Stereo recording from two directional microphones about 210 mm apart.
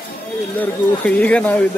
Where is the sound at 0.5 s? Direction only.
5° left (ahead or behind).